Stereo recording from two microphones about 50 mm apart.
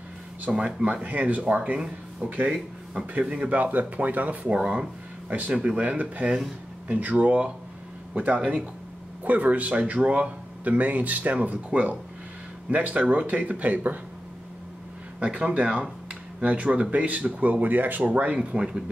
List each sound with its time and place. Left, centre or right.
0.5 s speech: centre
1.0 s speech: right; by 3.1 s centre
3.2 s speech: right
4.6 s speech: centre
9.2 s speech: right
15.1 s speech: right